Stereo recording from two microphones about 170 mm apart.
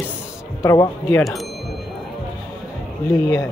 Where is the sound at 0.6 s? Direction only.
20° left (ahead or behind).